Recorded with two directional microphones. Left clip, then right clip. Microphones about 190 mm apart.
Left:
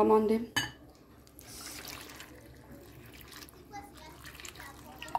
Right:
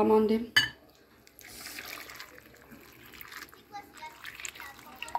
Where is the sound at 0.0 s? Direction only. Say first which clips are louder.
Right 1 dB; 5° left (ahead or behind).